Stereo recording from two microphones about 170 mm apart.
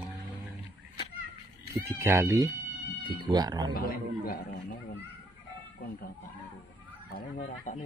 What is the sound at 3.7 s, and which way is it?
A man's voice, 60° left (ahead or behind).